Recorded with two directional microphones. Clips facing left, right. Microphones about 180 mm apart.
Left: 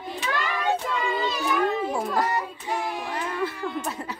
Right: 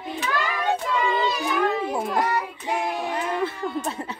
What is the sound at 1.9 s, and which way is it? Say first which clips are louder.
Speech: right 1 dB; 20° right (ahead or behind).